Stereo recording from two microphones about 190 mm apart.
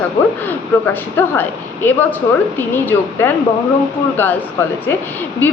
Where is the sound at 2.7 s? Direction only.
10° left (ahead or behind).